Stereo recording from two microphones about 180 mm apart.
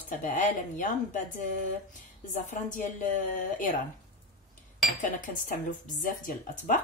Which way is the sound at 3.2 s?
50° left (ahead or behind).